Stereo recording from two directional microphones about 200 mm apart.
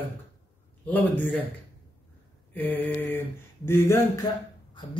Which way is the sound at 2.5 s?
10° left (ahead or behind).